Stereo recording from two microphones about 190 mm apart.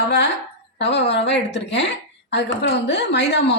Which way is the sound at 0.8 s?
65° left (ahead or behind).